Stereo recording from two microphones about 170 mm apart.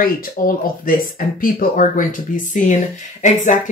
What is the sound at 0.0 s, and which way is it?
Speech, 55° left (ahead or behind).